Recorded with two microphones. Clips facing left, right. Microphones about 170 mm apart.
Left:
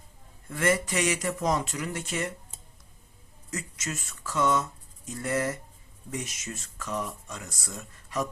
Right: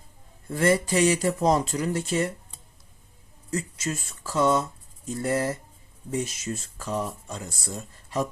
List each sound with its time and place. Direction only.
0.4 s speech: 30° right (ahead or behind)
3.5 s speech: 30° right (ahead or behind)